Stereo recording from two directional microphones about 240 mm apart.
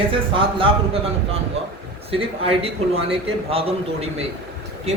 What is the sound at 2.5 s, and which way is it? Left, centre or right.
A man's voice, right.